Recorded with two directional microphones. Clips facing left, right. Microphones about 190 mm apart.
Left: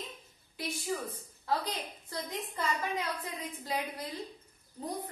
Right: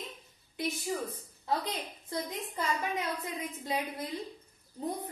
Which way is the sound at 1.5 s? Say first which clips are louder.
Even; 25° right (ahead or behind).